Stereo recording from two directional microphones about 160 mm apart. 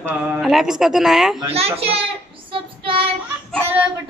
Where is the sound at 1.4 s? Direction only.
40° right (ahead or behind).